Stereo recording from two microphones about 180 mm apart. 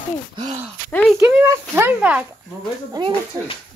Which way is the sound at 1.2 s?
15° right (ahead or behind).